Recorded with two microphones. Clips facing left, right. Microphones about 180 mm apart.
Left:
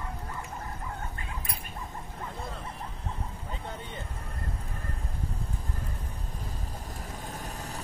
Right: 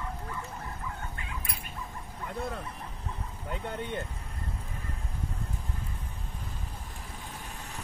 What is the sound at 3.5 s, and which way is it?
Vehicle, 65° right (ahead or behind).